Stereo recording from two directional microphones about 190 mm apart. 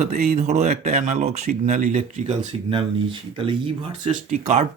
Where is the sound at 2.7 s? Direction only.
25° right (ahead or behind).